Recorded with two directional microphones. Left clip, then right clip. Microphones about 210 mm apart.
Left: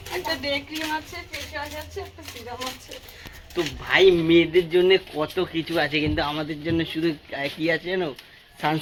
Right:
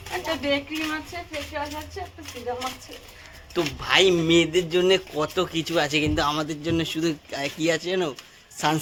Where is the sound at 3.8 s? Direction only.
15° right (ahead or behind).